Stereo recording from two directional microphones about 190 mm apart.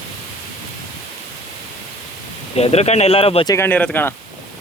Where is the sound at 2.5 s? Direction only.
35° left (ahead or behind).